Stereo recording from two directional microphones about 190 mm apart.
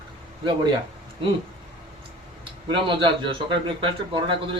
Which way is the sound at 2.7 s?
25° right (ahead or behind).